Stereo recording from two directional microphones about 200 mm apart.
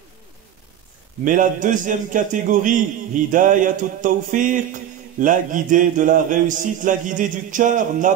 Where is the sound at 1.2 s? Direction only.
40° right (ahead or behind).